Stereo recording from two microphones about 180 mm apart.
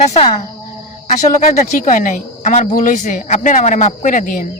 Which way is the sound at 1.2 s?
40° left (ahead or behind).